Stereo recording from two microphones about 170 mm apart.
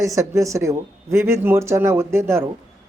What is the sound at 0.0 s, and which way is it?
Speech, 20° right (ahead or behind).